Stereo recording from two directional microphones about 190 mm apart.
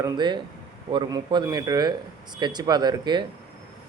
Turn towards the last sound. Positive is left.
turn(degrees=-20)  # may be behind; listen again after turning